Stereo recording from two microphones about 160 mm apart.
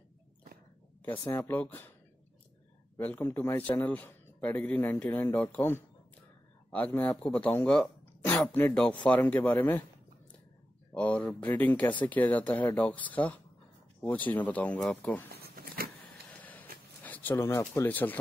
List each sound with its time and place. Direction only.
1.0 s a man's voice: 15° left (ahead or behind)
3.0 s a man's voice: 10° left (ahead or behind)
10.9 s a man's voice: 5° left (ahead or behind)
15.3 s a sound: 70° right (ahead or behind)
16.3 s a sound: 10° left (ahead or behind)
17.0 s speech: 10° left (ahead or behind)